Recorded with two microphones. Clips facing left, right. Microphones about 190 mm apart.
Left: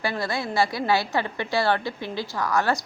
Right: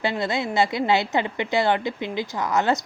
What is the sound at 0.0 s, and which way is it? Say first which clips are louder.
Speech: right 3 dB; 20° right (ahead or behind).